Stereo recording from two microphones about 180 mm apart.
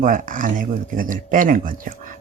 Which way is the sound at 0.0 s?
50° right (ahead or behind).